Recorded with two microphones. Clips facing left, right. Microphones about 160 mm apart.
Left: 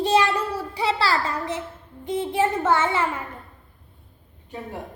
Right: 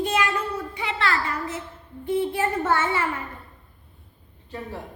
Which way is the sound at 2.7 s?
20° left (ahead or behind).